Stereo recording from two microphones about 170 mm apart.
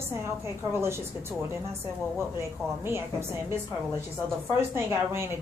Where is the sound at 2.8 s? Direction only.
15° right (ahead or behind).